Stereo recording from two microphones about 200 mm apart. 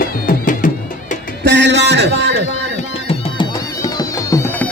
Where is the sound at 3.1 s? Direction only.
20° left (ahead or behind).